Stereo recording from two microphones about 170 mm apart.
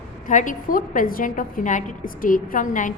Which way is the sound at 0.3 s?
50° left (ahead or behind).